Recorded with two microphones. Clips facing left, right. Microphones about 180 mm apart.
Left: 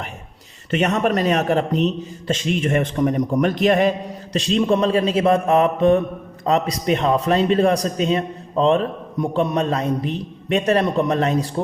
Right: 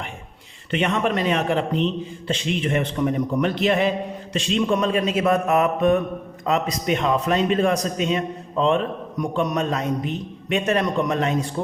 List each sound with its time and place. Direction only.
0.7 s a man's voice: 40° left (ahead or behind)